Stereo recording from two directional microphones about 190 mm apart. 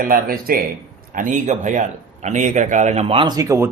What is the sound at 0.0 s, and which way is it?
Speech, 50° right (ahead or behind).